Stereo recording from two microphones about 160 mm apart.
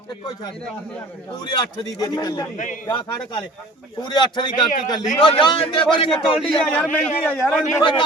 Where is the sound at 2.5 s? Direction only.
55° left (ahead or behind).